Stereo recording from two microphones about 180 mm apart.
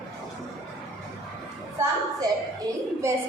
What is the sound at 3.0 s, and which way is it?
Speech, 15° right (ahead or behind).